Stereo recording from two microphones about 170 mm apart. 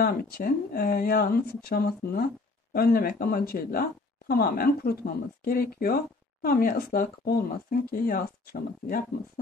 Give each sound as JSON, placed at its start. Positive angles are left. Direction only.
{"t": 0.0, "sound": "speech", "side_deg": 60}